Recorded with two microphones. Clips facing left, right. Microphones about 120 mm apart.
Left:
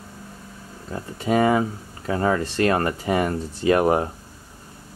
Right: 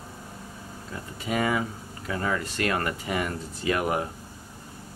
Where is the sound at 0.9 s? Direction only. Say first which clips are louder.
Left 8 dB; 35° left (ahead or behind).